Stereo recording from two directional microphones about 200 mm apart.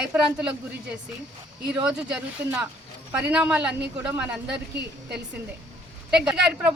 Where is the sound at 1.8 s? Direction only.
5° right (ahead or behind).